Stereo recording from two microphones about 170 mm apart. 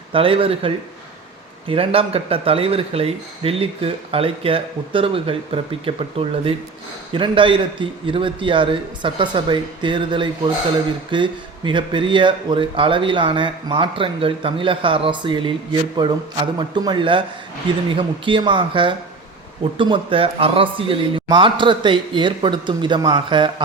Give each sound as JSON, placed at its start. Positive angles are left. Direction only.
{"t": 0.1, "sound": "speech", "side_deg": -30}